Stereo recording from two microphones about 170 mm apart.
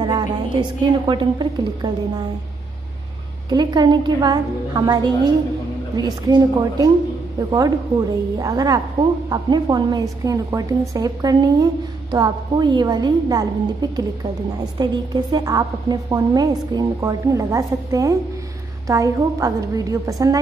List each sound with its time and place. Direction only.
0.0 s a woman's voice: 25° right (ahead or behind)
3.4 s a woman's voice: 25° right (ahead or behind)